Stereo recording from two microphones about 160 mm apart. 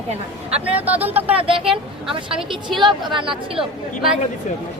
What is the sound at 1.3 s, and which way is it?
A woman's voice, 35° right (ahead or behind).